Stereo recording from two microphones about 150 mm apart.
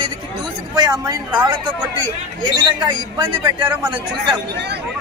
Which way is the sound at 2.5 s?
30° right (ahead or behind).